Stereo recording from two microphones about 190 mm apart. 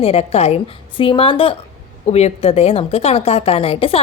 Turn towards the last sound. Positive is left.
turn(degrees=30)  # may be behind; listen again after turning